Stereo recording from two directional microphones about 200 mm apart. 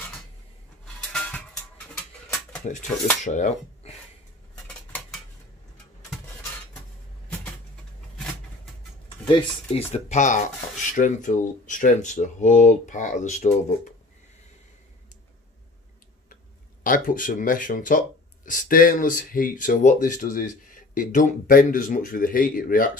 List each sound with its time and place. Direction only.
3.3 s speech: 40° left (ahead or behind)
9.2 s speech: 25° left (ahead or behind)
16.8 s speech: 45° left (ahead or behind)